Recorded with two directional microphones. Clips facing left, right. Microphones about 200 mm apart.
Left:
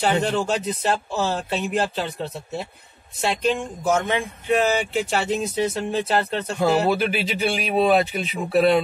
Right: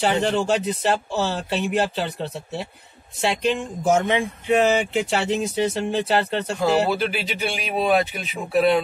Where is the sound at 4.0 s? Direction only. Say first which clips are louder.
Right 2 dB; 20° right (ahead or behind).